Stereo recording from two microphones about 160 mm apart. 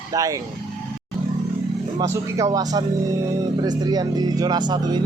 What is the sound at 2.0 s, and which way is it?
Speech, 20° right (ahead or behind).